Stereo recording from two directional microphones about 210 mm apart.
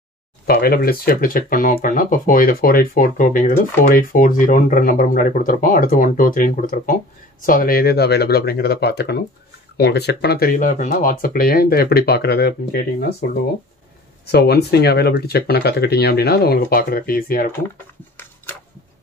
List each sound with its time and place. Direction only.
0.5 s speech: 45° left (ahead or behind)
14.2 s speech: 50° left (ahead or behind)